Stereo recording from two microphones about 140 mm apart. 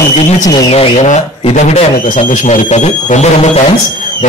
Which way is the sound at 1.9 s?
70° left (ahead or behind).